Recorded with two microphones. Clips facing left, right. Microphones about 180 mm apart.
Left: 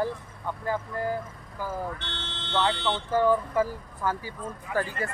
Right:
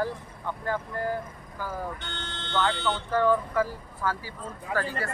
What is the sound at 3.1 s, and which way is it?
Speech, 15° left (ahead or behind).